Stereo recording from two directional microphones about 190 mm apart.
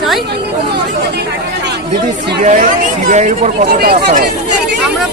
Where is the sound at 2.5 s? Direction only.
40° right (ahead or behind).